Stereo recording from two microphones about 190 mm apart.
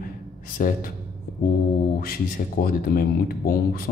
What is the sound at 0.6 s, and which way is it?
Speech, 45° left (ahead or behind).